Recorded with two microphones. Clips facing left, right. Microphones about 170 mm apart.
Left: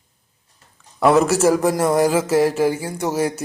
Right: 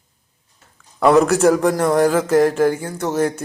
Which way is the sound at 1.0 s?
Centre (ahead or behind).